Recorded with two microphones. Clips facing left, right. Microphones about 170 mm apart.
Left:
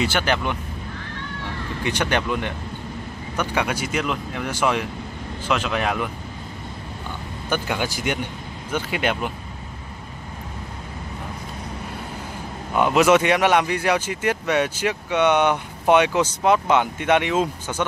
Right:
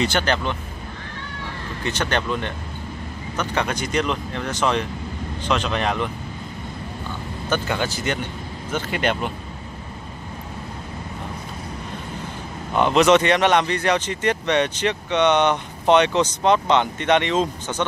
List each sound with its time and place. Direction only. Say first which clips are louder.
0.0 s speech: right 1 dB; 10° left (ahead or behind)
1.9 s speech: left 1 dB; 10° left (ahead or behind)
7.4 s speech: right 1 dB; 10° left (ahead or behind)
12.7 s speech: right 1 dB; 10° left (ahead or behind)